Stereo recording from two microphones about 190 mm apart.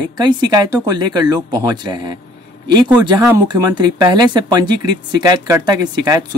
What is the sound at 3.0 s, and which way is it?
Speech, 20° right (ahead or behind).